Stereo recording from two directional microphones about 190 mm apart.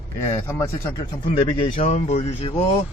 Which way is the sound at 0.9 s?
30° left (ahead or behind).